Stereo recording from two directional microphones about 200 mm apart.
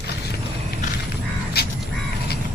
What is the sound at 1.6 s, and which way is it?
Crow, 50° left (ahead or behind).